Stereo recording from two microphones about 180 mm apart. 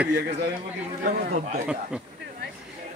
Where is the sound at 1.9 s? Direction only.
5° right (ahead or behind).